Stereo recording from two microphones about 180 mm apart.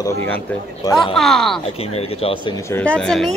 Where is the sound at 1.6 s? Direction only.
35° left (ahead or behind).